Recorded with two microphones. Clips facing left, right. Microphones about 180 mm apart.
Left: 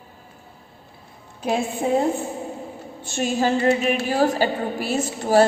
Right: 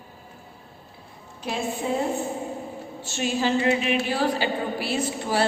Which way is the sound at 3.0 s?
50° left (ahead or behind).